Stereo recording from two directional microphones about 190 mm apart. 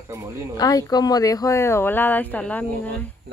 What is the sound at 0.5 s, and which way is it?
Speech, 20° left (ahead or behind).